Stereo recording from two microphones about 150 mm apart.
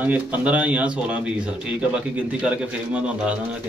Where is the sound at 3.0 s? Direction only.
10° right (ahead or behind).